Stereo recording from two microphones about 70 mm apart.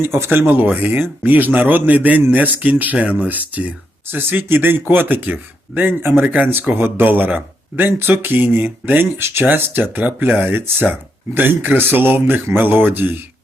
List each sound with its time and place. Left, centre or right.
0.0 s speech: right